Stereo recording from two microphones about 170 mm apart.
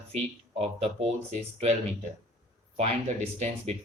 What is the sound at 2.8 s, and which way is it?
Speech, 40° right (ahead or behind).